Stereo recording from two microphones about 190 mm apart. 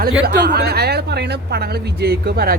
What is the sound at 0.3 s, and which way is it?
Speech, 60° right (ahead or behind).